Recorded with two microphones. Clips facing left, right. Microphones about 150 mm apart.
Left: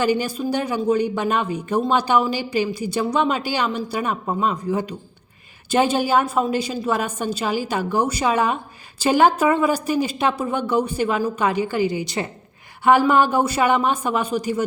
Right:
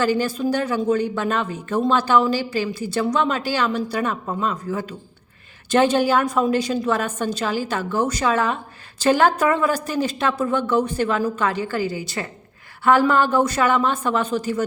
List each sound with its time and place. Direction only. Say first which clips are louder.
0.0 s a woman's voice: even; 15° left (ahead or behind)